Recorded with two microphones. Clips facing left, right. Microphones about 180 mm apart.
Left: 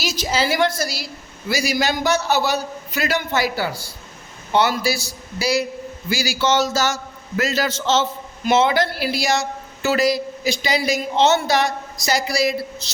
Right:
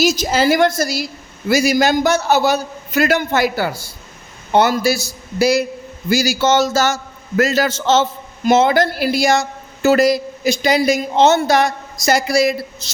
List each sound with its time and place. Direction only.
0.0 s speech: 45° right (ahead or behind)